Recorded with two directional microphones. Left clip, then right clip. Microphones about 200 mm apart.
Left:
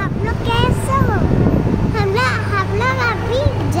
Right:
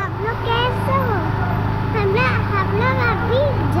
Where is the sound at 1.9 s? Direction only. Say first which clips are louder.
Even; 20° left (ahead or behind).